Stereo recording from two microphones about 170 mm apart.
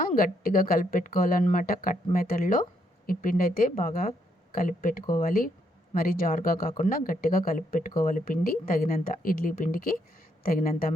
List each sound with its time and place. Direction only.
0.0 s speech: 55° left (ahead or behind)